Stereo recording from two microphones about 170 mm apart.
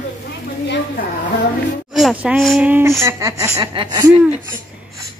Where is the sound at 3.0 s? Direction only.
20° right (ahead or behind).